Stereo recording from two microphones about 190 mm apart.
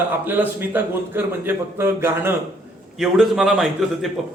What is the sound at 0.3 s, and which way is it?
A man's voice, 10° right (ahead or behind).